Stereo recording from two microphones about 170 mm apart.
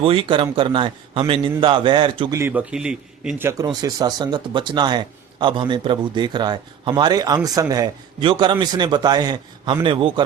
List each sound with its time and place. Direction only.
0.0 s a man's voice: 35° right (ahead or behind)
2.3 s a man's voice: 15° right (ahead or behind); by 10.2 s 30° right (ahead or behind)